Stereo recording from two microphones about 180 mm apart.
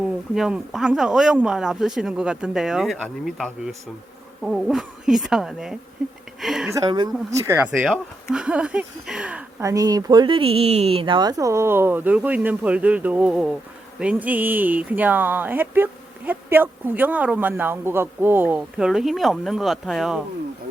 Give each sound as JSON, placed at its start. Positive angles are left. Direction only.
{"t": 0.3, "sound": "speech", "side_deg": -5}
{"t": 6.7, "sound": "speech", "side_deg": -20}
{"t": 9.6, "sound": "speech", "side_deg": -20}